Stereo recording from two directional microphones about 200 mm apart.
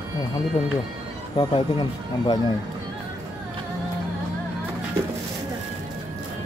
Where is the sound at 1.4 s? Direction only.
25° left (ahead or behind).